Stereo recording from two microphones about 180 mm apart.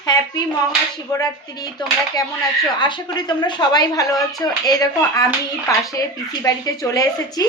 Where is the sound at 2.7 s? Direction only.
25° left (ahead or behind).